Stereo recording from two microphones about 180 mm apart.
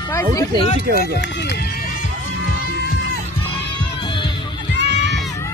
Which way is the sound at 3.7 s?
30° left (ahead or behind).